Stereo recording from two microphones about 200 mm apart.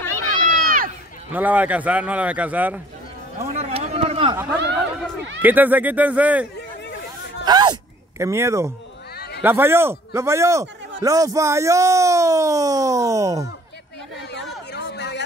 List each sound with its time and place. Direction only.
0.1 s run: 40° right (ahead or behind)
1.3 s speech: 10° right (ahead or behind)
3.3 s a sound: 35° right (ahead or behind)
5.4 s speech: 10° right (ahead or behind)
7.4 s speech: 20° right (ahead or behind)
14.3 s chatter: 60° left (ahead or behind)